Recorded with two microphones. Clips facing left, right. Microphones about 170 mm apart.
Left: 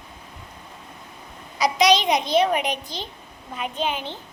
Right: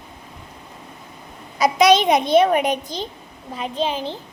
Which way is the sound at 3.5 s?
30° right (ahead or behind).